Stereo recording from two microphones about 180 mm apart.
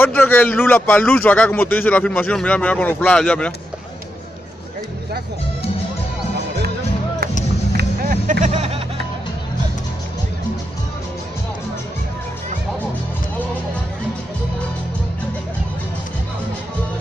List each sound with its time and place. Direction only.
0.0 s speech: 10° left (ahead or behind)
7.7 s music: 50° right (ahead or behind)